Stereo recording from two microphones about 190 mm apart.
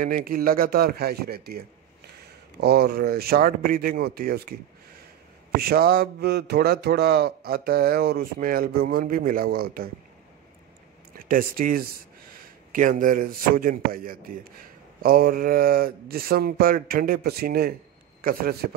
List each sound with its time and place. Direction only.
0.0 s speech: 45° right (ahead or behind)
2.6 s speech: 55° right (ahead or behind)
5.6 s speech: 55° right (ahead or behind)
11.1 s speech: 45° right (ahead or behind)